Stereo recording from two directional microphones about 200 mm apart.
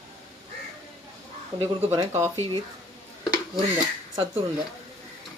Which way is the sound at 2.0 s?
15° right (ahead or behind).